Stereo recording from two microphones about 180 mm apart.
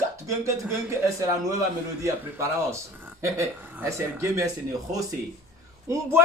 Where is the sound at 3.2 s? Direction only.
15° right (ahead or behind).